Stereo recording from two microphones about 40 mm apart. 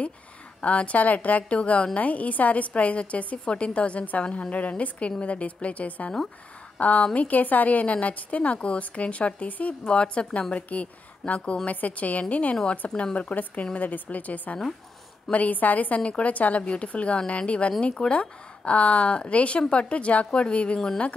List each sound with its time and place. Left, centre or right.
0.6 s a woman's voice: left
9.8 s a woman's voice: left